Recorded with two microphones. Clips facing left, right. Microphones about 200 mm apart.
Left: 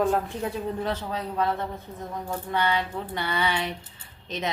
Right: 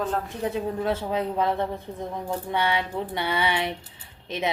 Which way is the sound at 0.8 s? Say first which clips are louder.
Right 3 dB; 10° right (ahead or behind).